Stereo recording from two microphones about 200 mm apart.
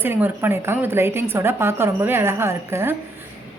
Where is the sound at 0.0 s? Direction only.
10° right (ahead or behind).